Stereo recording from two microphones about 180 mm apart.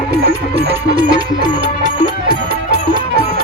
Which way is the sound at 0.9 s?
30° right (ahead or behind).